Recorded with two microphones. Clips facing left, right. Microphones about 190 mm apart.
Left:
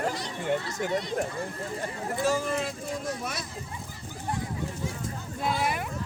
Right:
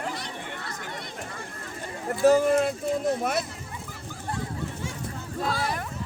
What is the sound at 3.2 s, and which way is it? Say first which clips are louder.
Speech: right 8 dB; 55° right (ahead or behind).